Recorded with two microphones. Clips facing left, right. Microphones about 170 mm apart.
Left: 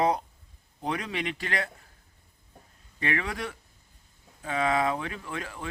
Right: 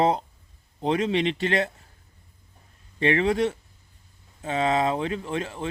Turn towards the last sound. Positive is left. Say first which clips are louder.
# right 7 dB
turn(degrees=-25)  # may be behind; listen again after turning